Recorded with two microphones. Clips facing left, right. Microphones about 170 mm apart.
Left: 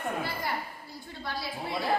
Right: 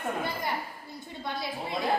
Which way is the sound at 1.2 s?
20° right (ahead or behind).